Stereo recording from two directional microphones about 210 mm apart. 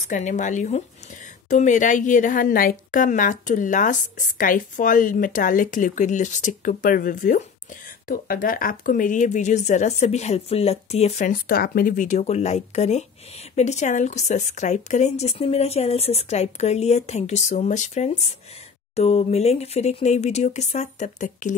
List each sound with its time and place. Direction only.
0.0 s a woman's voice: 35° left (ahead or behind)